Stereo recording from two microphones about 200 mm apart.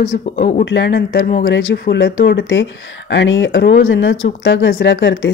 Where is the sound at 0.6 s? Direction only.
60° left (ahead or behind).